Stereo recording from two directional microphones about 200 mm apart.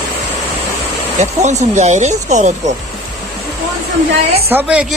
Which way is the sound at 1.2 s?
35° right (ahead or behind).